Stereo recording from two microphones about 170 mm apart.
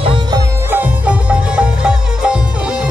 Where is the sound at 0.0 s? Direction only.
30° right (ahead or behind).